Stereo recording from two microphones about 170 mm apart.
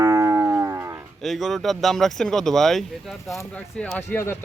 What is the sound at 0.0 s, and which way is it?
Livestock, 20° right (ahead or behind).